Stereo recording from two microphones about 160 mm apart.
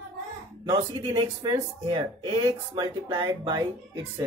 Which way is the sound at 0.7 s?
25° right (ahead or behind).